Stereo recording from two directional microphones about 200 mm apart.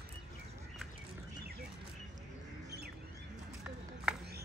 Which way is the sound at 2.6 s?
55° right (ahead or behind).